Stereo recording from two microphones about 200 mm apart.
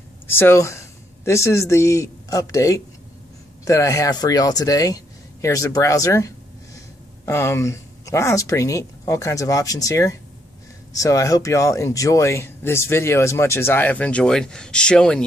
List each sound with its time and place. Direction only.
0.3 s speech: 10° left (ahead or behind)